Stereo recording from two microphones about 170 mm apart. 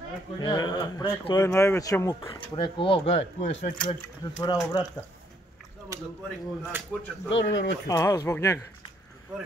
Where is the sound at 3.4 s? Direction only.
45° left (ahead or behind).